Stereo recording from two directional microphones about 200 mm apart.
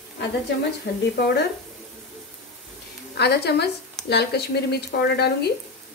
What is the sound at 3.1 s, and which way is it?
A woman's voice, 55° left (ahead or behind).